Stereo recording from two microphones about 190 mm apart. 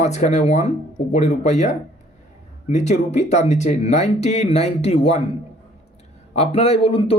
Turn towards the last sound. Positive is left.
turn(degrees=30)  # may be behind; listen again after turning